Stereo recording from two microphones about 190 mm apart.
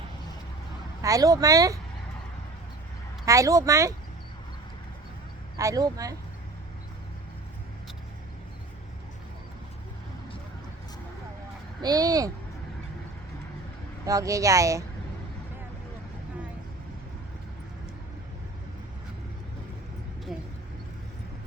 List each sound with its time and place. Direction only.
1.0 s speech: 20° right (ahead or behind)
3.2 s speech: 15° right (ahead or behind)
5.5 s speech: 20° right (ahead or behind)
11.8 s speech: 20° right (ahead or behind)
14.0 s speech: 15° right (ahead or behind)